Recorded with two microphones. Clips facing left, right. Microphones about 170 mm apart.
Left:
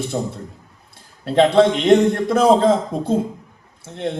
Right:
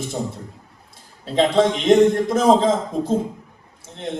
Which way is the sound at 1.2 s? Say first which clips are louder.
Left 3 dB; 60° left (ahead or behind).